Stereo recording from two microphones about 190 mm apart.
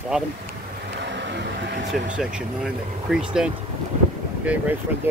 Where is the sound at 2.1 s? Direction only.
5° right (ahead or behind).